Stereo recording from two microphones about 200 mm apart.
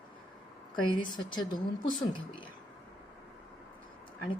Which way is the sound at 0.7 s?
25° left (ahead or behind).